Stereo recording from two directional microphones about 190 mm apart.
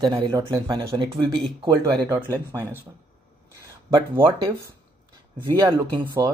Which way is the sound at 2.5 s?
15° right (ahead or behind).